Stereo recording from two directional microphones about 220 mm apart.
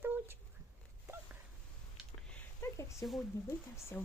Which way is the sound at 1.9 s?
5° left (ahead or behind).